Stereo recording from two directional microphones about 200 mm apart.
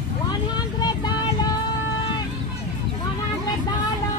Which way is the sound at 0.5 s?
20° left (ahead or behind).